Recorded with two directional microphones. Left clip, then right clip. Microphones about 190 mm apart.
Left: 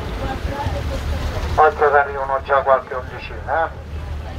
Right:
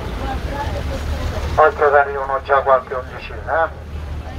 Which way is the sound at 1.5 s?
50° right (ahead or behind).